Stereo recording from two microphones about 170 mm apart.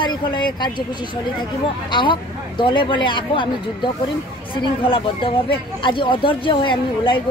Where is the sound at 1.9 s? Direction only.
30° left (ahead or behind).